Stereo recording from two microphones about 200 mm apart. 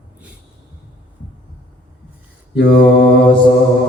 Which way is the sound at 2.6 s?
50° left (ahead or behind).